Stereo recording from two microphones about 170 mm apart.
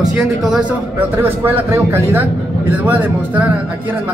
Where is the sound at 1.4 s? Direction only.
15° right (ahead or behind).